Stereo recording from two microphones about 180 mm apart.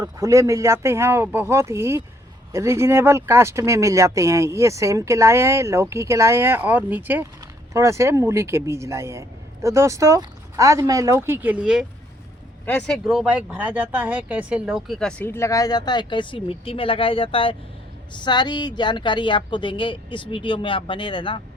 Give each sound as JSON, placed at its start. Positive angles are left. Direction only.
{"t": 0.0, "sound": "speech", "side_deg": -15}